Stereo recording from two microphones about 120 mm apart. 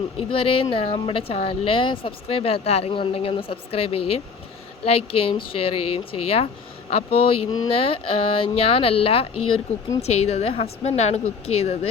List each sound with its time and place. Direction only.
0.2 s speech: 50° left (ahead or behind)
10.0 s a woman's voice: 65° left (ahead or behind)